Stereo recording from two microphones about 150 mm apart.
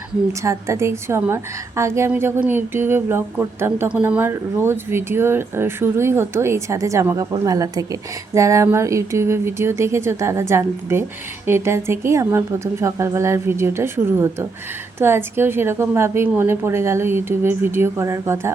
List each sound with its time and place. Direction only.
0.4 s a woman's voice: 20° right (ahead or behind)